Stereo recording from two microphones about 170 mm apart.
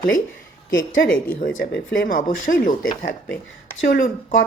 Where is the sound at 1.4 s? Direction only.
60° left (ahead or behind).